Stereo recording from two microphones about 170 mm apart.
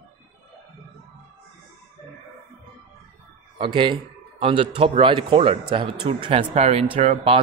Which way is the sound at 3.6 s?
30° right (ahead or behind).